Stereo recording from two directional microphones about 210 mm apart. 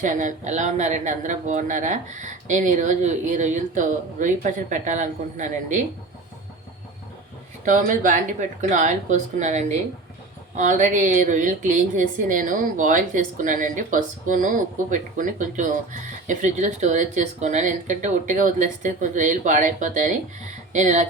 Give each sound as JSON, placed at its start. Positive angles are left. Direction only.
{"t": 0.0, "sound": "a woman's voice", "side_deg": -35}
{"t": 7.6, "sound": "a woman's voice", "side_deg": -40}